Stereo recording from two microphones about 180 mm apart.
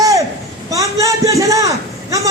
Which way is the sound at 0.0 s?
20° right (ahead or behind).